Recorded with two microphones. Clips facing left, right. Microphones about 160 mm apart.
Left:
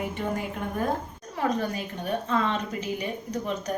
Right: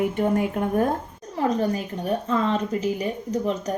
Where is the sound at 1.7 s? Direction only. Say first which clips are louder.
Right 4 dB; 40° right (ahead or behind).